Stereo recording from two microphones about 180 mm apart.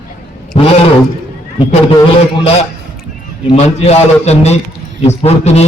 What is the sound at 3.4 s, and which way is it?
A man's voice, 35° left (ahead or behind).